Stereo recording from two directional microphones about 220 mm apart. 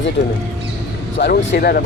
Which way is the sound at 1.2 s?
45° left (ahead or behind).